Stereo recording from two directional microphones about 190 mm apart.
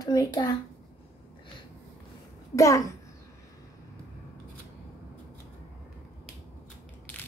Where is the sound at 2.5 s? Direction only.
15° left (ahead or behind).